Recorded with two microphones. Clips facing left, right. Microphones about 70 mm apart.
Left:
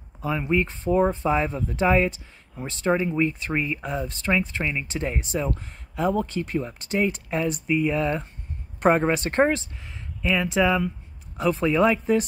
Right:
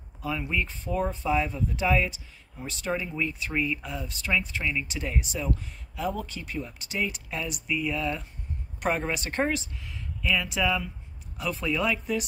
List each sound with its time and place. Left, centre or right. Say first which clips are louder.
0.2 s speech: left 6 dB; left